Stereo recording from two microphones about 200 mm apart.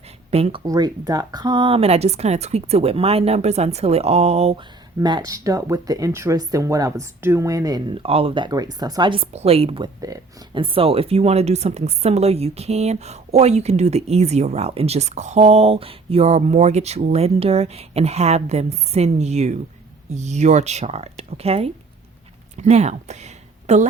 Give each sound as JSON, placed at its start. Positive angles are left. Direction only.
{"t": 0.3, "sound": "speech", "side_deg": -30}
{"t": 0.6, "sound": "speech", "side_deg": -15}
{"t": 4.9, "sound": "speech", "side_deg": -20}